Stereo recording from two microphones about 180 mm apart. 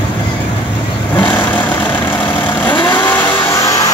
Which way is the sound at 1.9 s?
10° left (ahead or behind).